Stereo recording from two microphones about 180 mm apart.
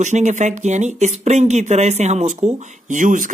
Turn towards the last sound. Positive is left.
turn(degrees=-45)  # may be behind; listen again after turning